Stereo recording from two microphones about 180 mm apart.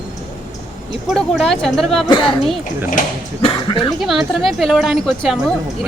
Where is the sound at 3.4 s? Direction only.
25° left (ahead or behind).